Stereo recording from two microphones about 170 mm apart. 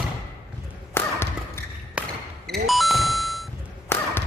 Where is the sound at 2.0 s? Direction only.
5° right (ahead or behind).